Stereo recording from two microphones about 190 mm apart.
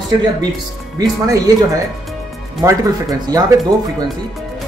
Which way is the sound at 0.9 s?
20° right (ahead or behind).